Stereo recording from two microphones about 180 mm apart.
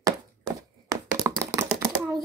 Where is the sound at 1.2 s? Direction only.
15° right (ahead or behind).